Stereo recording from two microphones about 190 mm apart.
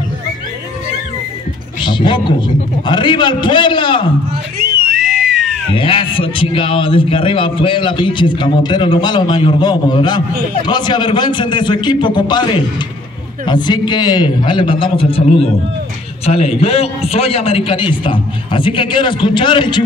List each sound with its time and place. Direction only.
1.8 s a man's voice: 25° left (ahead or behind)
4.6 s music: 55° right (ahead or behind)
4.9 s a sound: centre (ahead or behind)
5.8 s a man's voice: 25° left (ahead or behind)